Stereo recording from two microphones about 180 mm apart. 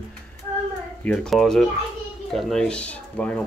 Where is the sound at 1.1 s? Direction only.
Centre (ahead or behind).